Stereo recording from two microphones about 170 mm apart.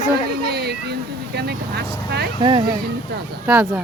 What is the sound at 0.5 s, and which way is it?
Speech, 75° right (ahead or behind).